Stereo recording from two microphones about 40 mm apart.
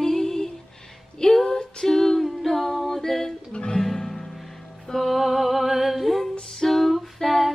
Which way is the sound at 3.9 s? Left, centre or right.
Centre.